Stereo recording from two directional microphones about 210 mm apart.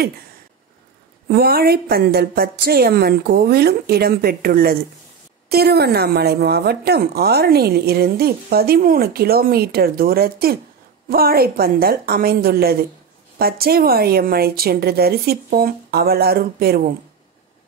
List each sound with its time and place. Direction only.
1.3 s speech: 45° right (ahead or behind)